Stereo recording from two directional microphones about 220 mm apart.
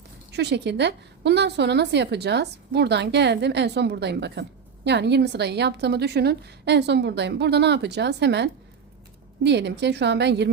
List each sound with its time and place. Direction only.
0.3 s a woman's voice: 50° right (ahead or behind)